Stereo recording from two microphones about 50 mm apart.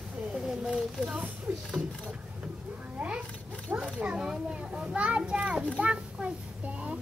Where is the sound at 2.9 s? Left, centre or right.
Right.